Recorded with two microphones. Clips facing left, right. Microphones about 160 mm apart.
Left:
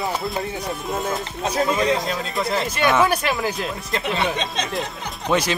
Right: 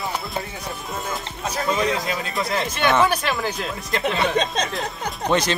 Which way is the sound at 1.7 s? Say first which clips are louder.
Left 2 dB; centre (ahead or behind).